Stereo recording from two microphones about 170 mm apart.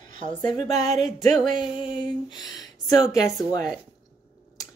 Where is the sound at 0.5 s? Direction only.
25° left (ahead or behind).